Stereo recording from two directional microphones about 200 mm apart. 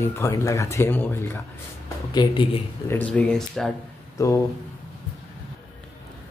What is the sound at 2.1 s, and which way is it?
Speech, 25° left (ahead or behind).